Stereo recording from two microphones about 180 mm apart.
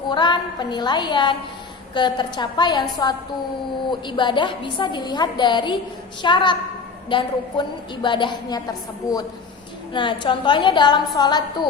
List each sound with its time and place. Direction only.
0.1 s a woman's voice: 25° left (ahead or behind)